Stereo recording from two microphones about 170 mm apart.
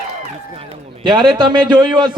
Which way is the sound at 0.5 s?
30° right (ahead or behind).